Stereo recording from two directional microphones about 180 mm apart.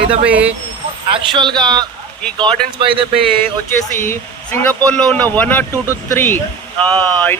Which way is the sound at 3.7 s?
10° left (ahead or behind).